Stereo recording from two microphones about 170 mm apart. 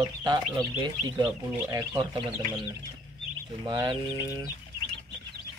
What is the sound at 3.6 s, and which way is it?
Speech, 20° right (ahead or behind).